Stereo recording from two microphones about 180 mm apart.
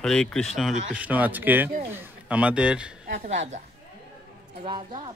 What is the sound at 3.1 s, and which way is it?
Speech, 40° right (ahead or behind).